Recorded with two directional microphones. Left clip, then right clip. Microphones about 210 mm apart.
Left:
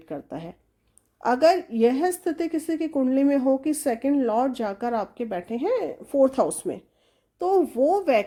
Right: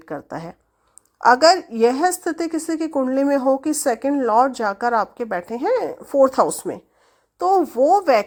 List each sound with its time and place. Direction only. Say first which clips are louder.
0.1 s a woman's voice: right 5 dB; 15° right (ahead or behind)